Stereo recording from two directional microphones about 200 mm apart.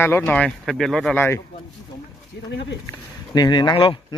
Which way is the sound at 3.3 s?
20° left (ahead or behind).